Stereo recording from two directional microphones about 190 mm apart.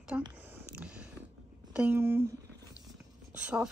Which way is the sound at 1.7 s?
10° right (ahead or behind).